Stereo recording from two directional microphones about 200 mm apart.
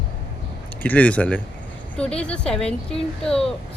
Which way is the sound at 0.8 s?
10° left (ahead or behind).